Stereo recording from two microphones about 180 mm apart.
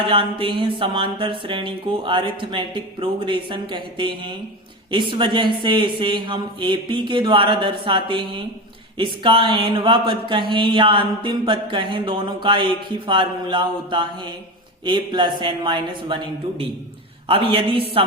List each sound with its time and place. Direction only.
0.0 s music: 30° right (ahead or behind)
17.2 s a woman's voice: 30° right (ahead or behind)